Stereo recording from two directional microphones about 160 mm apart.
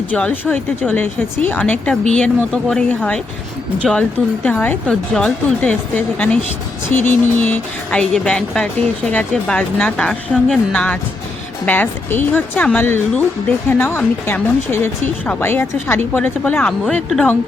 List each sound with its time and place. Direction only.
0.1 s speech: 10° left (ahead or behind)
4.4 s speech: 10° left (ahead or behind)